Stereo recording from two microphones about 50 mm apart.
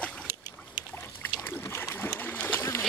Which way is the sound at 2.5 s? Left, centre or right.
Left.